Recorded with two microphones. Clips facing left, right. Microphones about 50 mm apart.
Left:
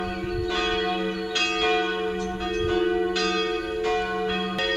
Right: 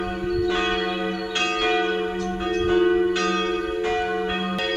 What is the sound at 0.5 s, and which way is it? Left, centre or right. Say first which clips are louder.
Church bell: right 2 dB; right.